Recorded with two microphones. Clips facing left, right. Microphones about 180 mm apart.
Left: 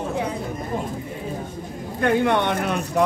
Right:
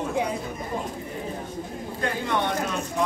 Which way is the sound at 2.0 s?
65° left (ahead or behind).